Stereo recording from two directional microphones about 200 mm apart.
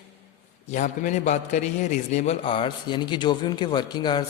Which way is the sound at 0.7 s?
40° left (ahead or behind).